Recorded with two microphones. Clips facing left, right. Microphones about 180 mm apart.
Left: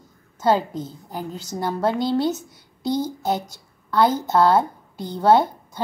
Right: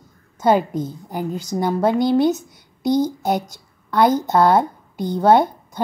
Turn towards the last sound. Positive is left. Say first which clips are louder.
# right 2 dB
turn(degrees=-15)  # may be behind; listen again after turning